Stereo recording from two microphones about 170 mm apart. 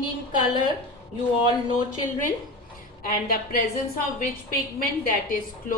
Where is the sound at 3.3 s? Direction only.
60° left (ahead or behind).